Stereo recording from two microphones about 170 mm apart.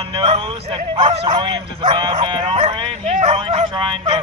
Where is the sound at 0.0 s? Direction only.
35° right (ahead or behind).